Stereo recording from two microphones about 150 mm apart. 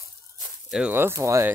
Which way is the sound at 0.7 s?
10° right (ahead or behind).